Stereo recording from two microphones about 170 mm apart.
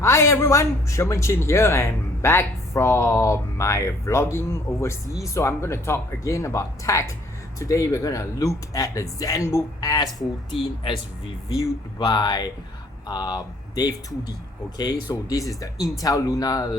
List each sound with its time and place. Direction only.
0.0 s speech: 15° left (ahead or behind)
10.8 s speech: 30° left (ahead or behind)
11.4 s speech: 20° left (ahead or behind)